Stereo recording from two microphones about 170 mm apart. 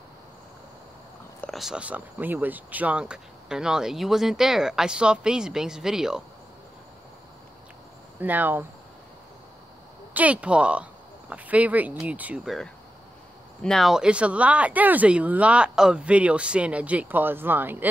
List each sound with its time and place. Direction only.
1.4 s speech: centre (ahead or behind)
8.2 s speech: 10° right (ahead or behind)
10.1 s speech: 10° right (ahead or behind)
13.6 s speech: centre (ahead or behind)